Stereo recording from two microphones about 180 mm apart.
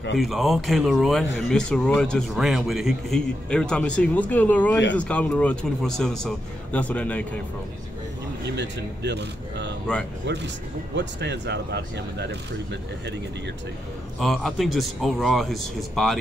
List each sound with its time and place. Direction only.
0.2 s a man's voice: centre (ahead or behind)
8.5 s speech: 75° right (ahead or behind)
9.9 s a man's voice: 5° left (ahead or behind)
11.0 s speech: 75° right (ahead or behind)
14.2 s a man's voice: centre (ahead or behind)